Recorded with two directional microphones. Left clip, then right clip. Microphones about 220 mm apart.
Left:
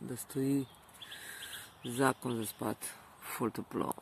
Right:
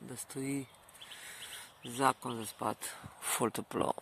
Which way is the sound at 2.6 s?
25° right (ahead or behind).